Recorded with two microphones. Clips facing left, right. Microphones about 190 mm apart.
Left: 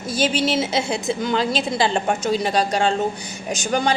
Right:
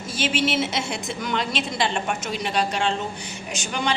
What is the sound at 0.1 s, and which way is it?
A woman's voice, 35° left (ahead or behind).